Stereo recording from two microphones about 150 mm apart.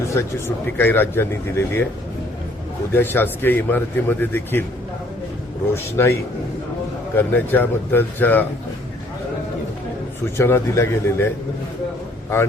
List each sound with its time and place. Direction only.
0.1 s speech: 15° left (ahead or behind)
2.9 s speech: 15° left (ahead or behind)
5.7 s speech: 15° left (ahead or behind)
7.2 s speech: 10° left (ahead or behind)
10.3 s speech: 15° left (ahead or behind)